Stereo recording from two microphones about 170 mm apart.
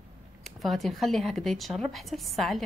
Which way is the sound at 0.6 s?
Centre (ahead or behind).